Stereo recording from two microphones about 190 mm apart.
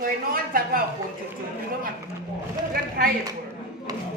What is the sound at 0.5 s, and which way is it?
Speech, 50° right (ahead or behind).